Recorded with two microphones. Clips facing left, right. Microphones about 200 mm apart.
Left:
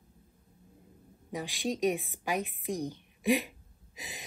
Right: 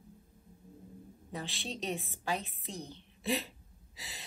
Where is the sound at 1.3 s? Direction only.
15° left (ahead or behind).